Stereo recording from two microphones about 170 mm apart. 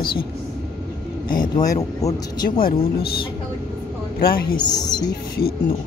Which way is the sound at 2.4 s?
60° left (ahead or behind).